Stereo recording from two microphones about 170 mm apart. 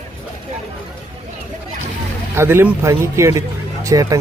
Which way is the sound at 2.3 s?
15° right (ahead or behind).